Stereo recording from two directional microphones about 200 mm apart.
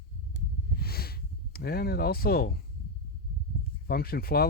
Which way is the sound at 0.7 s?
50° left (ahead or behind).